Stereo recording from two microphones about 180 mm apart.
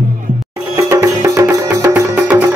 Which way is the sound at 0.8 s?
15° right (ahead or behind).